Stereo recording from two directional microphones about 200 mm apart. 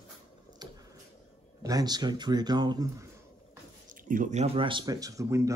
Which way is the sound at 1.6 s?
20° right (ahead or behind).